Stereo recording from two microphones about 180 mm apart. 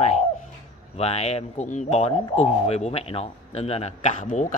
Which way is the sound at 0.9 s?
35° left (ahead or behind).